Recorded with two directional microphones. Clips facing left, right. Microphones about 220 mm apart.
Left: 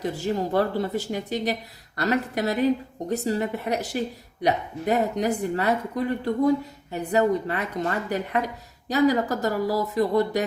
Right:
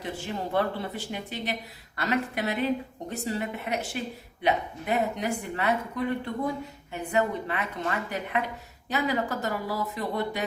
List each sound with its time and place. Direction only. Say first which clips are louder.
0.0 s a woman's voice: left 7 dB; 40° left (ahead or behind)